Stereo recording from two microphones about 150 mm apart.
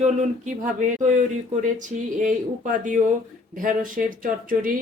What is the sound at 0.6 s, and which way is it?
Speech, 55° right (ahead or behind).